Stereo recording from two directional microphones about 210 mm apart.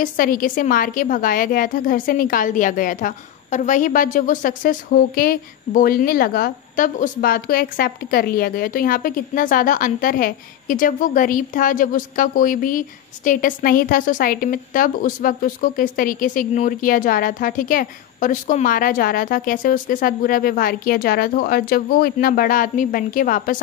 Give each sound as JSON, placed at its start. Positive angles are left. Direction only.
{"t": 0.0, "sound": "a woman's voice", "side_deg": 40}